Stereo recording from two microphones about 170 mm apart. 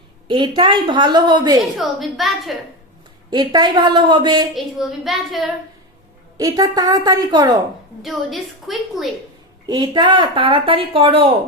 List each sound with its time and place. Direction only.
0.3 s a woman's voice: 30° right (ahead or behind)
1.7 s a woman's voice: centre (ahead or behind)
3.2 s a woman's voice: 25° right (ahead or behind)
4.5 s a woman's voice: centre (ahead or behind)
6.3 s a woman's voice: 20° right (ahead or behind)
8.0 s a woman's voice: centre (ahead or behind)
9.6 s a woman's voice: 25° right (ahead or behind)